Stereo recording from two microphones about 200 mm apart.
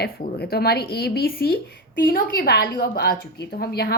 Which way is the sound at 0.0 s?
50° left (ahead or behind).